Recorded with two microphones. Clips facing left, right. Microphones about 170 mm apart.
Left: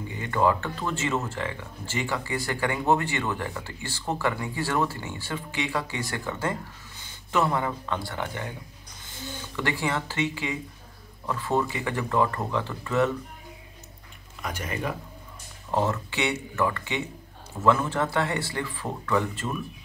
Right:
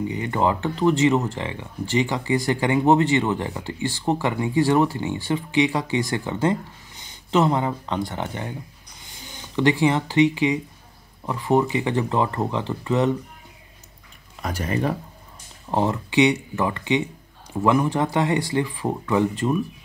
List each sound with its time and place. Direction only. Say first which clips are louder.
0.1 s speech: left 2 dB; 20° right (ahead or behind)
14.4 s speech: right 7 dB; 35° right (ahead or behind)
15.7 s speech: right 5 dB; 15° right (ahead or behind)